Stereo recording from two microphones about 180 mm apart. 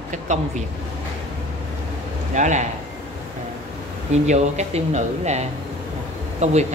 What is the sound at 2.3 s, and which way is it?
Speech, 40° right (ahead or behind).